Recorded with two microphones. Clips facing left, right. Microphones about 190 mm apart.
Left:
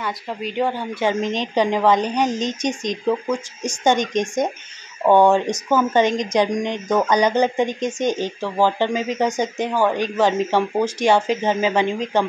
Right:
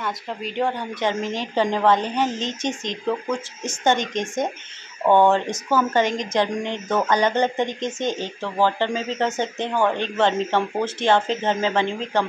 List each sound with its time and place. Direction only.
0.0 s speech: centre (ahead or behind)
1.2 s speech: 20° left (ahead or behind)
7.5 s speech: 20° right (ahead or behind)
8.2 s speech: 10° left (ahead or behind)